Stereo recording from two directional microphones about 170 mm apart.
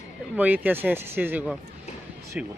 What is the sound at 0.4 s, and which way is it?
Speech, 10° right (ahead or behind).